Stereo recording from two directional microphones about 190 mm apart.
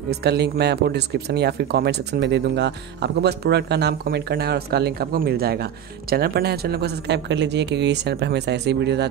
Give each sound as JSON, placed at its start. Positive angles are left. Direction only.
{"t": 0.1, "sound": "speech", "side_deg": -60}